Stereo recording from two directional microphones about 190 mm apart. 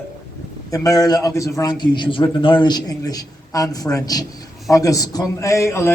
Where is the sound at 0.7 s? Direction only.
15° left (ahead or behind).